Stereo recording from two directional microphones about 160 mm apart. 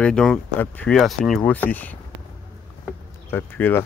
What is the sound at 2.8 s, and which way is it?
Bee, 10° left (ahead or behind).